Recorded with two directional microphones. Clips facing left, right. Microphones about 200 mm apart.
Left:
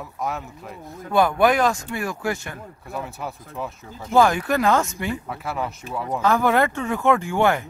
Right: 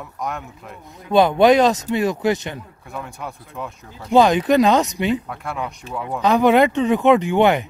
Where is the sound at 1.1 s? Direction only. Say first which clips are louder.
Right 5 dB; 20° right (ahead or behind).